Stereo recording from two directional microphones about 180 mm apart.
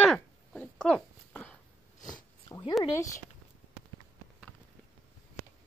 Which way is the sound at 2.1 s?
20° left (ahead or behind).